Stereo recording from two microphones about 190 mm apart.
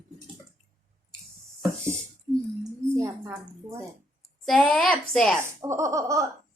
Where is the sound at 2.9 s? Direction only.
15° right (ahead or behind).